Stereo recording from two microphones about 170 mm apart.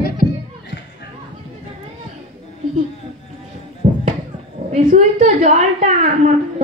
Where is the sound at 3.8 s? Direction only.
50° right (ahead or behind).